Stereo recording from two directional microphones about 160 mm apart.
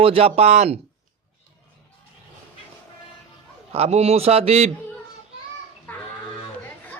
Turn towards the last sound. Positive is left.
turn(degrees=10)  # may be behind; listen again after turning